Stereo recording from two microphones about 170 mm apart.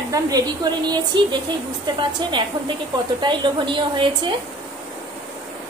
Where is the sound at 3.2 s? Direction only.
30° right (ahead or behind).